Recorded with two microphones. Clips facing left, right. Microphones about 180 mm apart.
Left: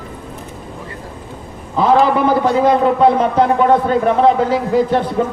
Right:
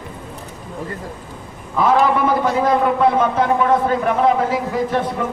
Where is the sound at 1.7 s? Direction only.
30° left (ahead or behind).